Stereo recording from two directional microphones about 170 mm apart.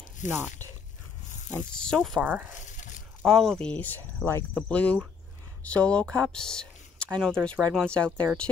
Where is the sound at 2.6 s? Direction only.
45° left (ahead or behind).